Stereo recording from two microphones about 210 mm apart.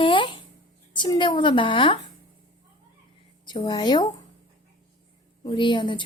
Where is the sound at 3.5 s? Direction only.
20° left (ahead or behind).